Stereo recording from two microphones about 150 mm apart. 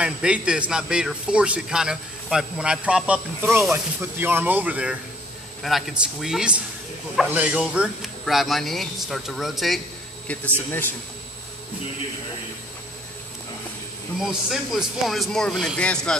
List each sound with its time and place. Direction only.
0.0 s a man's voice: 5° right (ahead or behind); by 10.5 s 10° left (ahead or behind)
14.2 s a man's voice: 5° right (ahead or behind)